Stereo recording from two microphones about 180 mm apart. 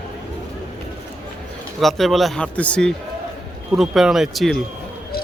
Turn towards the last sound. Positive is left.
turn(degrees=0)  # may be behind; listen again after turning